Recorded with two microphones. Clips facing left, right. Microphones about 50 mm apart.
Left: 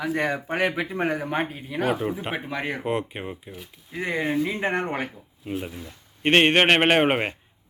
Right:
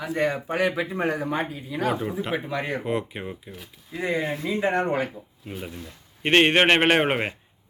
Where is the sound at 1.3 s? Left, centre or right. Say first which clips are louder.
Left 1 dB; left.